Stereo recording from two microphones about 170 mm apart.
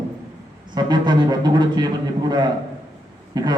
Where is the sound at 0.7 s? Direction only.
25° right (ahead or behind).